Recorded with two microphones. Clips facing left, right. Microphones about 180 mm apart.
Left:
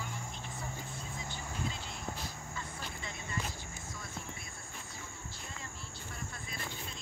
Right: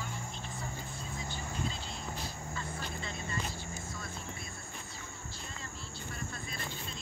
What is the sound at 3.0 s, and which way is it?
Vehicle, 15° left (ahead or behind).